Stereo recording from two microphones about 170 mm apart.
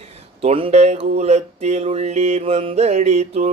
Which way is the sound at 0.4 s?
35° right (ahead or behind).